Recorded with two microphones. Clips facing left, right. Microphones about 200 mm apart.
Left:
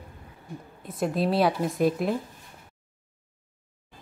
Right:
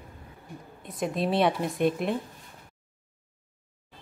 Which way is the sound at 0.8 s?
Centre (ahead or behind).